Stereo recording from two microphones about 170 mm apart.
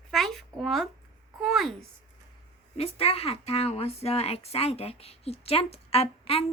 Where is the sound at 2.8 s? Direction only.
35° left (ahead or behind).